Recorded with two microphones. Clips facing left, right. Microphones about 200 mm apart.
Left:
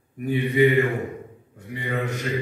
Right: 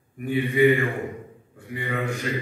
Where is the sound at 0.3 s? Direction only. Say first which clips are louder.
Even; 20° left (ahead or behind).